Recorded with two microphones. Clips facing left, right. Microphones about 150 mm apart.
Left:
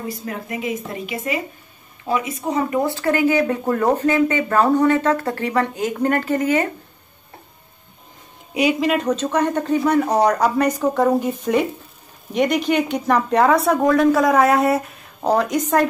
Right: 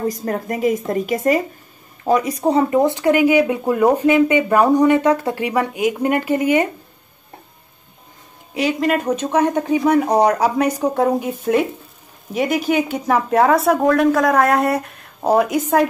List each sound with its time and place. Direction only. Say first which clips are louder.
0.0 s speech: right 7 dB; 45° right (ahead or behind)
2.8 s speech: right 4 dB; 20° right (ahead or behind)
8.7 s speech: right 1 dB; centre (ahead or behind)